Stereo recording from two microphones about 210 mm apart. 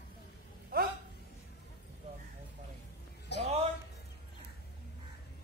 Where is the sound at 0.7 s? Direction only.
45° right (ahead or behind).